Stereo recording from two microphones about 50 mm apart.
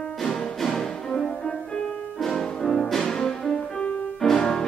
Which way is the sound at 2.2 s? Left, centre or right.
Centre.